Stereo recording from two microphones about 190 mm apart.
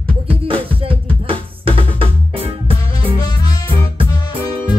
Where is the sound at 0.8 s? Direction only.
30° right (ahead or behind).